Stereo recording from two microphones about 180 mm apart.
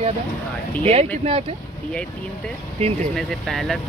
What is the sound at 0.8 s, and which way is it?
Speech, 35° right (ahead or behind).